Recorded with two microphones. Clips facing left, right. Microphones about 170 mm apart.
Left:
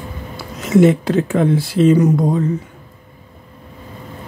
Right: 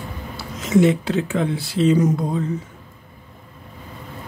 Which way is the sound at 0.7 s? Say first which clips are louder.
Left 4 dB; 50° left (ahead or behind).